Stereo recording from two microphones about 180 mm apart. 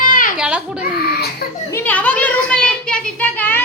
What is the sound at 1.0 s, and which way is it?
Speech, 60° left (ahead or behind).